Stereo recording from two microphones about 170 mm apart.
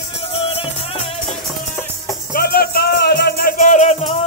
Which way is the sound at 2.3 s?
60° left (ahead or behind).